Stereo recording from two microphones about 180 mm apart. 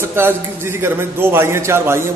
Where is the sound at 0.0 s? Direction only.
15° right (ahead or behind).